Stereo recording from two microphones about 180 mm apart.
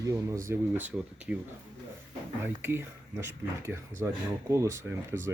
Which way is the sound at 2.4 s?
10° right (ahead or behind).